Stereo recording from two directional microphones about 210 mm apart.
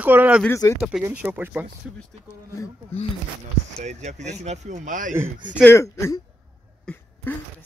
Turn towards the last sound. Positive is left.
turn(degrees=10)  # may be behind; listen again after turning